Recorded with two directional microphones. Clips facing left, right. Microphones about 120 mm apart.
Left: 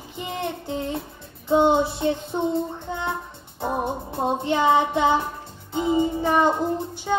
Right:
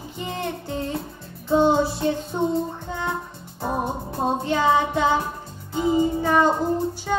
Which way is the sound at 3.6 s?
20° left (ahead or behind).